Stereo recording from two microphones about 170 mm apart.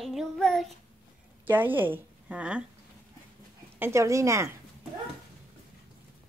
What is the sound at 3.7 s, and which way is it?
Speech, 15° right (ahead or behind).